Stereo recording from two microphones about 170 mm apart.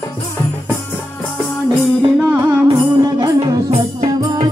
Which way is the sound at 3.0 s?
25° right (ahead or behind).